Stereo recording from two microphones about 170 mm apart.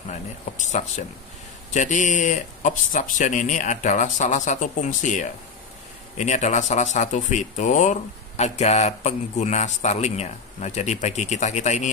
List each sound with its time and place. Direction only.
0.6 s speech: 45° left (ahead or behind)